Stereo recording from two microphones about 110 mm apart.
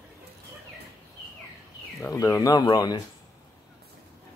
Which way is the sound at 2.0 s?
30° left (ahead or behind).